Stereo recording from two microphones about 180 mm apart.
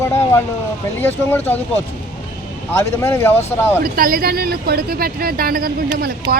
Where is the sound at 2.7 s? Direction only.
15° left (ahead or behind).